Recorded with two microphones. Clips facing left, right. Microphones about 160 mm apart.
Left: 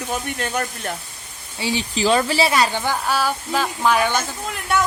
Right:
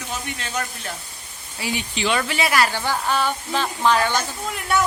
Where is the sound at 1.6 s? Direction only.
30° left (ahead or behind); by 4.2 s 15° left (ahead or behind).